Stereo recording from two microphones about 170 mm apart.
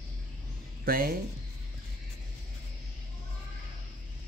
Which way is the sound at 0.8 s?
60° right (ahead or behind).